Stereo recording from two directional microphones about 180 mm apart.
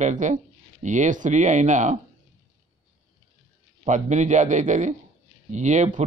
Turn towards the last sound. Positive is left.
turn(degrees=-40)  # may be behind; listen again after turning